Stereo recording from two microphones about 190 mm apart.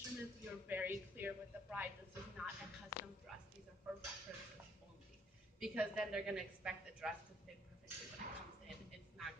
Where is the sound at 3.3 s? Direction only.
Centre (ahead or behind).